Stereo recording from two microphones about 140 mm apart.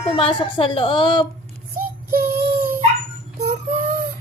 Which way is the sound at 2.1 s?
15° right (ahead or behind).